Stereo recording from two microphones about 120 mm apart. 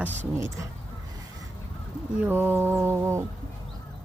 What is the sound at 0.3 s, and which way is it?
Speech, 25° right (ahead or behind).